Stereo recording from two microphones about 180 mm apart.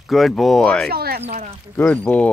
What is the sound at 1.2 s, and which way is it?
Speech, 35° right (ahead or behind).